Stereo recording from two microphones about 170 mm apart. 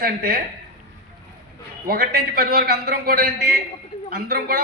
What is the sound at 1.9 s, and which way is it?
A man's voice, 65° right (ahead or behind).